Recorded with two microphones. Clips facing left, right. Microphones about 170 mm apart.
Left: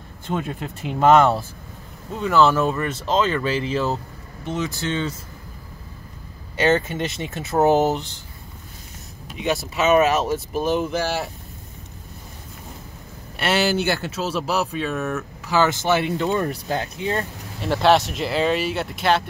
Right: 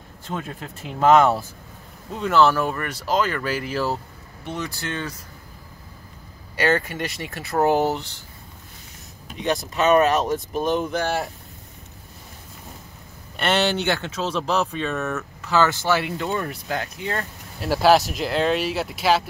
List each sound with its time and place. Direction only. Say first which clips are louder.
0.3 s speech: left 5 dB; 5° left (ahead or behind)
2.3 s speech: left 1 dB; 15° left (ahead or behind)
6.5 s speech: left 2 dB; 20° left (ahead or behind)
9.4 s speech: even; 5° left (ahead or behind)
13.4 s speech: left 1 dB; 5° left (ahead or behind); by 17.3 s 20° left (ahead or behind)
17.6 s speech: even; 5° right (ahead or behind)